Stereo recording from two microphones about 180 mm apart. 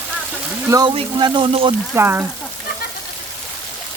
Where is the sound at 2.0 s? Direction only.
10° right (ahead or behind).